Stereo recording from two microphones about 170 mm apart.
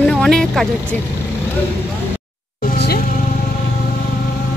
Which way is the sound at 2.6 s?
65° left (ahead or behind).